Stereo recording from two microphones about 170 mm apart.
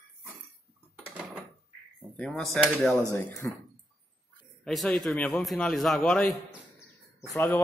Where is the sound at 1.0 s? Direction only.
10° right (ahead or behind).